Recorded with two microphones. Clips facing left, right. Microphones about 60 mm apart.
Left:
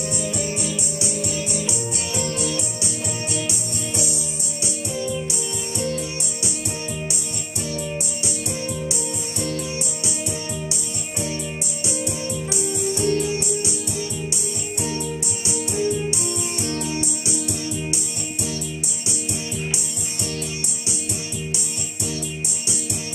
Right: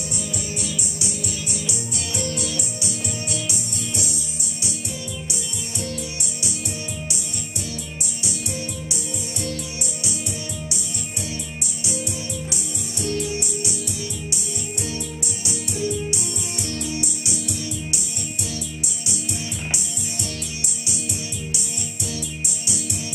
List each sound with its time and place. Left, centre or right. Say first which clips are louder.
0.1 s music: left 4 dB; left
12.4 s music: left 8 dB; left
14.8 s music: left 6 dB; left